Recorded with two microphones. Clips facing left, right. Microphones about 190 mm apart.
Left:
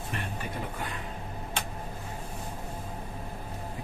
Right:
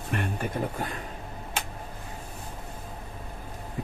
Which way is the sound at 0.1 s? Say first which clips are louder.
Right 7 dB; 55° right (ahead or behind).